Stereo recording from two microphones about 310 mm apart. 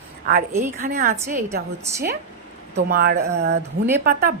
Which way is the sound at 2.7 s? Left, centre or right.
Right.